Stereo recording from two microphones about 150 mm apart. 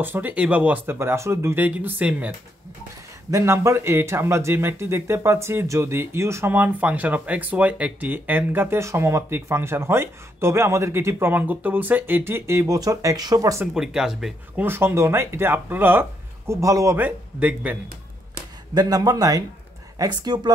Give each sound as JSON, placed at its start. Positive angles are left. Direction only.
{"t": 0.0, "sound": "speech", "side_deg": -10}
{"t": 13.7, "sound": "speech", "side_deg": -5}
{"t": 14.7, "sound": "speech", "side_deg": -15}
{"t": 18.8, "sound": "a man's voice", "side_deg": -25}